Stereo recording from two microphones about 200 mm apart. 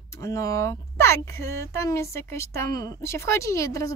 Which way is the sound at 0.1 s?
15° left (ahead or behind).